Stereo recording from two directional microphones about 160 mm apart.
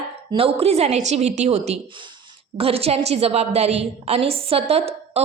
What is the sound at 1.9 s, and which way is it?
A woman's voice, 30° right (ahead or behind).